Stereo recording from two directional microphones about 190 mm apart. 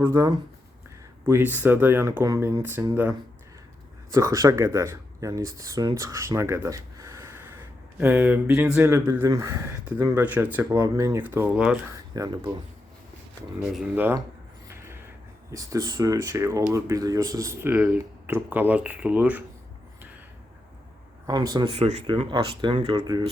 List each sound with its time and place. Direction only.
0.0 s speech: 15° right (ahead or behind)
13.7 s speech: 10° right (ahead or behind)
14.7 s a sound: 15° right (ahead or behind)
15.5 s speech: 20° right (ahead or behind)
21.2 s speech: 20° right (ahead or behind); by 22.0 s 35° right (ahead or behind)
22.0 s speech: 25° right (ahead or behind)